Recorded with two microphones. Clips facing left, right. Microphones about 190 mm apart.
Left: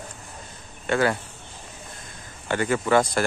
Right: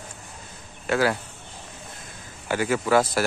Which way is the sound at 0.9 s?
Centre (ahead or behind).